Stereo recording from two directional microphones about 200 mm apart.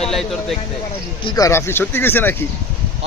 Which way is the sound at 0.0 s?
Centre (ahead or behind).